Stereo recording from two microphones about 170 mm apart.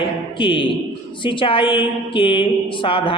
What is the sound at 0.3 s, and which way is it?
A man's voice, 30° left (ahead or behind).